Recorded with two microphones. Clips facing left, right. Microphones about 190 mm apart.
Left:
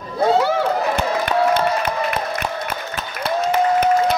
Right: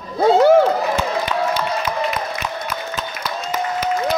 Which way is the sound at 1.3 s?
55° left (ahead or behind).